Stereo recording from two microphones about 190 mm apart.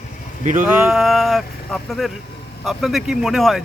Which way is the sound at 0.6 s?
5° right (ahead or behind).